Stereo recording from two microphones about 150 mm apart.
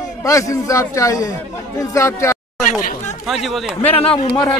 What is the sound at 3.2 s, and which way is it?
Speech, centre (ahead or behind).